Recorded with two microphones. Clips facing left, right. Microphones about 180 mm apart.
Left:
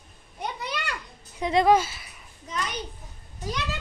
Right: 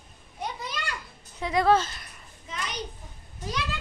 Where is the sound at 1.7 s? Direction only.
5° left (ahead or behind).